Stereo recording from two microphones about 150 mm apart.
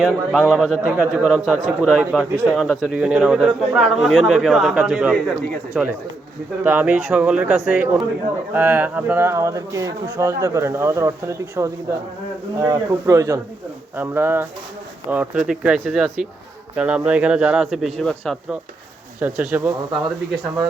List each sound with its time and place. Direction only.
0.0 s a man's voice: centre (ahead or behind)
19.2 s speech: 10° right (ahead or behind)